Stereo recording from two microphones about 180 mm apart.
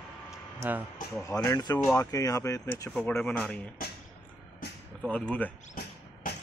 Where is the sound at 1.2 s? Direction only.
20° left (ahead or behind).